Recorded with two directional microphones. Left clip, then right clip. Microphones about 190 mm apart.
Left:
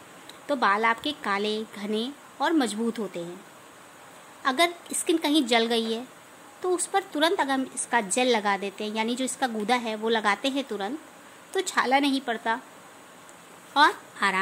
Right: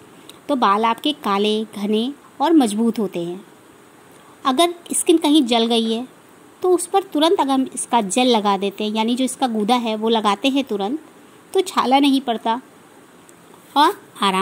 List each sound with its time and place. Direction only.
0.5 s a woman's voice: 25° right (ahead or behind)
4.4 s a woman's voice: 25° right (ahead or behind)
13.7 s a woman's voice: 25° right (ahead or behind)